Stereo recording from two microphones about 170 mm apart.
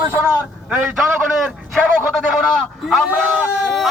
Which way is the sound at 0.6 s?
5° right (ahead or behind).